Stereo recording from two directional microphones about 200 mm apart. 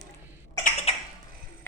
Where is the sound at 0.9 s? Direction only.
30° left (ahead or behind).